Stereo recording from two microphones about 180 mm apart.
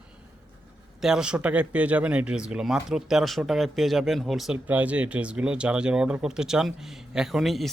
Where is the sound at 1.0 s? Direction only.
5° right (ahead or behind).